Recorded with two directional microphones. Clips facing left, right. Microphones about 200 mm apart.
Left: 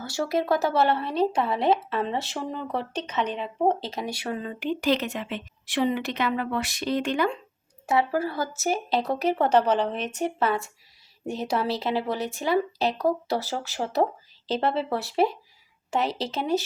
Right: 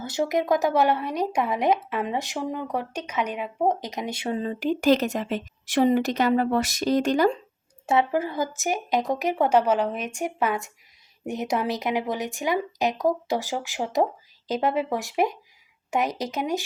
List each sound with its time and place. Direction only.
0.0 s speech: 20° right (ahead or behind); by 7.3 s 40° right (ahead or behind)
7.9 s speech: 20° right (ahead or behind)